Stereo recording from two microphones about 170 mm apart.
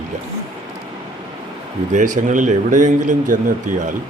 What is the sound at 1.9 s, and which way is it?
Speech, 50° right (ahead or behind).